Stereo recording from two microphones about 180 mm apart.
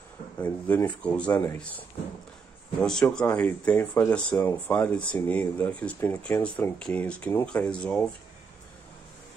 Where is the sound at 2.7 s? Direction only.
5° left (ahead or behind).